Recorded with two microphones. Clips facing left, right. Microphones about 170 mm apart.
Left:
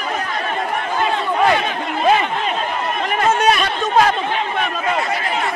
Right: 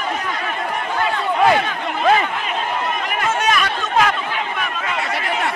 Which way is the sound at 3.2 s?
35° left (ahead or behind).